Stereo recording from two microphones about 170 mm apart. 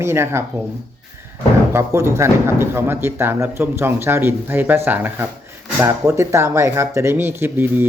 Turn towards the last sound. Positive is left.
turn(degrees=-10)  # may be behind; listen again after turning